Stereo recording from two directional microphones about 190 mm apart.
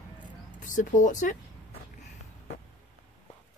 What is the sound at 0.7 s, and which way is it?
Speech, 40° left (ahead or behind).